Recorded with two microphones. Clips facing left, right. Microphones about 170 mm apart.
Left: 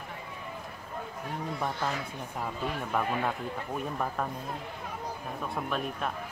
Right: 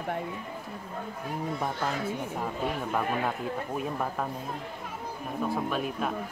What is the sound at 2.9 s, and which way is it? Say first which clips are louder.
Speech: left 2 dB; 5° right (ahead or behind).